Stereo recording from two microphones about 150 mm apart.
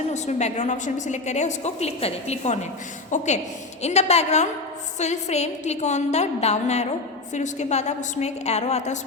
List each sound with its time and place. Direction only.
0.1 s a woman's voice: 50° left (ahead or behind)